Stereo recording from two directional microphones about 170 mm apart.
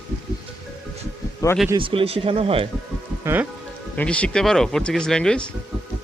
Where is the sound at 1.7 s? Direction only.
30° right (ahead or behind).